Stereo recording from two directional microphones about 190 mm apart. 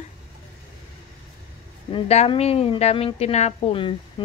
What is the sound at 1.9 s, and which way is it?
A woman's voice, 30° left (ahead or behind).